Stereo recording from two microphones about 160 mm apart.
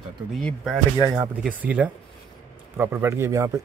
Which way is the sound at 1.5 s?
10° right (ahead or behind).